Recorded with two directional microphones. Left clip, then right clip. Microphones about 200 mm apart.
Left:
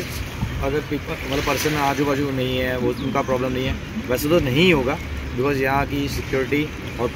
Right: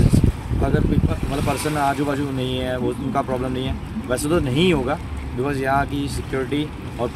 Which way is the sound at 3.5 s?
20° right (ahead or behind).